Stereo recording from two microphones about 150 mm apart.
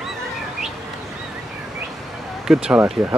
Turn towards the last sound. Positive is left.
turn(degrees=-10)  # may be behind; listen again after turning